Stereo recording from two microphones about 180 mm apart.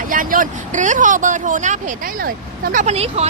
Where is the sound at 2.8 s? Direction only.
35° right (ahead or behind).